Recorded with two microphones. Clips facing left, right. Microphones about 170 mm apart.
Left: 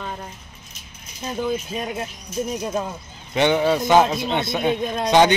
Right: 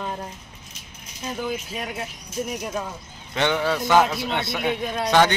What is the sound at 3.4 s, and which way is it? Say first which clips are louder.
A man's voice: left 5 dB; 20° left (ahead or behind).